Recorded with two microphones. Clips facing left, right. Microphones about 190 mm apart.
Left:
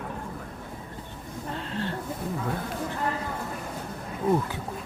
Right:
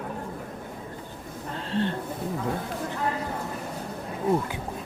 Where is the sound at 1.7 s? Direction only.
20° right (ahead or behind).